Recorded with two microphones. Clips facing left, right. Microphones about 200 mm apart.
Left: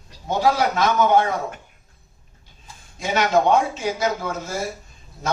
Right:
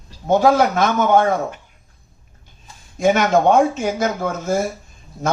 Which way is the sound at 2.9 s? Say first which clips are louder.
Right 4 dB; 50° right (ahead or behind).